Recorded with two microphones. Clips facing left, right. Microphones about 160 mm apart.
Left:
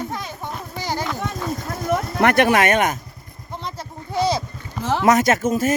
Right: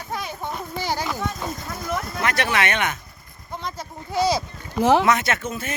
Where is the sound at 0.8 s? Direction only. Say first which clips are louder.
Left 1 dB; 15° left (ahead or behind).